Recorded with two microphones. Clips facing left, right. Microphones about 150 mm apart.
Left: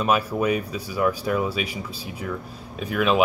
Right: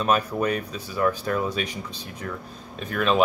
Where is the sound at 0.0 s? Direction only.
10° left (ahead or behind).